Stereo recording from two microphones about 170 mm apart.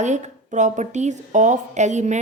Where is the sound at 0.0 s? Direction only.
45° right (ahead or behind).